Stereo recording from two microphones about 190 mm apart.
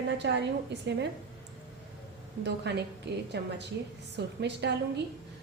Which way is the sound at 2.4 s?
65° right (ahead or behind).